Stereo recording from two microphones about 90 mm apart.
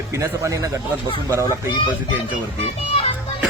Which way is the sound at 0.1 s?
35° right (ahead or behind).